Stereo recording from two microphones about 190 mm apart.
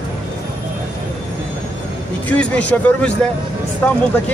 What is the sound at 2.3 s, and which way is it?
Speech, 5° left (ahead or behind).